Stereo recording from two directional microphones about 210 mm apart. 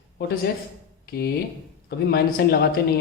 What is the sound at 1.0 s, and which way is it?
Speech, 45° left (ahead or behind).